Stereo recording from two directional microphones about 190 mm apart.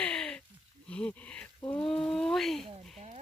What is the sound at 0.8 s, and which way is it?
Speech, 5° left (ahead or behind).